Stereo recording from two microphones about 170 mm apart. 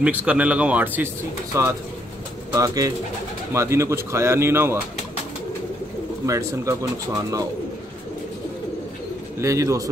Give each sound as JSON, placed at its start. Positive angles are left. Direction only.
{"t": 0.0, "sound": "speech", "side_deg": -10}
{"t": 6.2, "sound": "speech", "side_deg": -20}
{"t": 9.4, "sound": "speech", "side_deg": -20}